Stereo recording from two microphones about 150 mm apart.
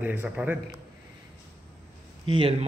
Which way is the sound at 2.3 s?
35° right (ahead or behind).